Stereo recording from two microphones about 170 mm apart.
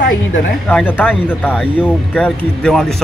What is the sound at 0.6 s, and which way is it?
Speech, 5° left (ahead or behind).